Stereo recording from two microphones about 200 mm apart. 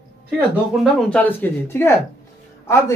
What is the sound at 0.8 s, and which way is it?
Speech, 5° left (ahead or behind).